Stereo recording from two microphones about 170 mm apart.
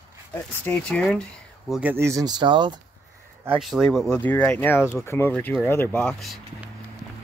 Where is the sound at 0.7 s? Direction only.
5° left (ahead or behind).